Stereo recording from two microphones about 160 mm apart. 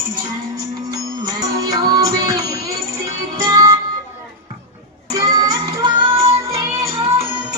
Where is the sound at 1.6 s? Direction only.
25° right (ahead or behind).